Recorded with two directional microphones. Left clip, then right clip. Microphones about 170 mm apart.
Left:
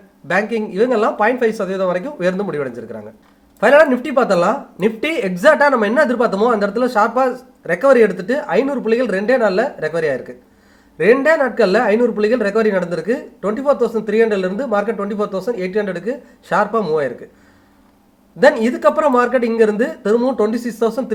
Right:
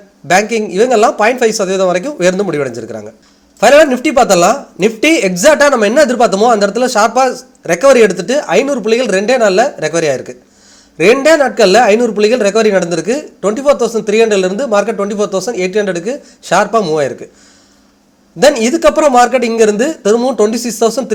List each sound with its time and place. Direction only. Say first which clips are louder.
0.3 s speech: right 7 dB; 30° right (ahead or behind)
18.3 s speech: right 4 dB; 30° right (ahead or behind)